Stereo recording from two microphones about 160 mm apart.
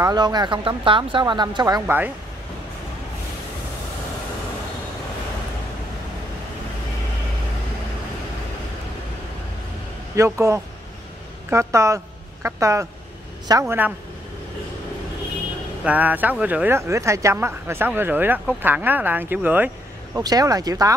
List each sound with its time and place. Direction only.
0.0 s speech: 25° right (ahead or behind)
1.9 s speech: 10° right (ahead or behind)
10.1 s speech: 15° right (ahead or behind)
15.8 s speech: 10° right (ahead or behind)
20.2 s speech: 20° right (ahead or behind)